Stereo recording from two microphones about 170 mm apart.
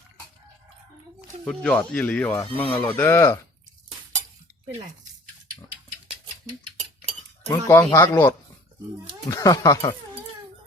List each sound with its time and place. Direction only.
1.5 s speech: 5° left (ahead or behind)
7.4 s speech: 15° left (ahead or behind)